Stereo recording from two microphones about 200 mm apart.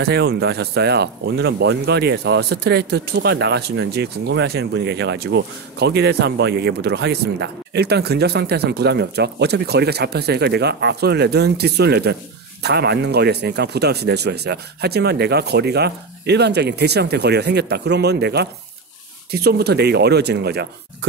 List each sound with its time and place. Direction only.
0.0 s speech: 55° right (ahead or behind)